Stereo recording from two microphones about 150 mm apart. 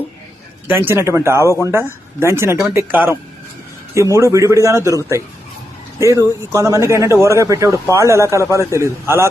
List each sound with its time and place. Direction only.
0.7 s speech: 15° right (ahead or behind)
6.0 s speech: 20° right (ahead or behind)